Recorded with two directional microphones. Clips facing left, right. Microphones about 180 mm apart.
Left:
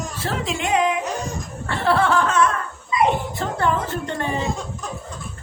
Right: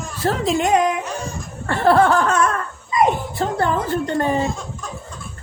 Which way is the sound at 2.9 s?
40° right (ahead or behind).